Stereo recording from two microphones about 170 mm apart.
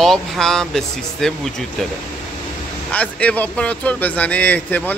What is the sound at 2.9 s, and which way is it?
A man's voice, 5° left (ahead or behind).